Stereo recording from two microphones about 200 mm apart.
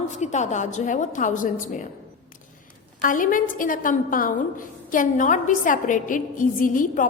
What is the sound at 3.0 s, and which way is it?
A woman's voice, 40° left (ahead or behind).